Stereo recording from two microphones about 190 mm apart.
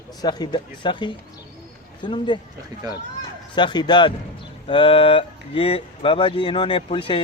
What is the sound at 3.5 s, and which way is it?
Speech, 25° left (ahead or behind).